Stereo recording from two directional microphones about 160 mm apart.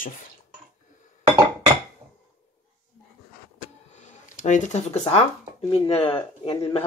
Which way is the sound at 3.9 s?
50° left (ahead or behind).